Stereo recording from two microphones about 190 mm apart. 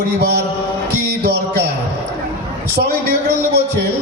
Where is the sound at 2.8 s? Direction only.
60° right (ahead or behind).